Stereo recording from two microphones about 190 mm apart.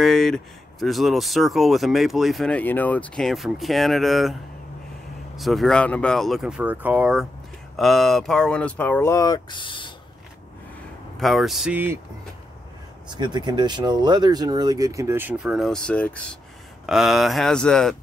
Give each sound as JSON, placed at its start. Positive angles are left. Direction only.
{"t": 0.0, "sound": "speech", "side_deg": 0}
{"t": 11.1, "sound": "speech", "side_deg": 0}
{"t": 13.1, "sound": "speech", "side_deg": -25}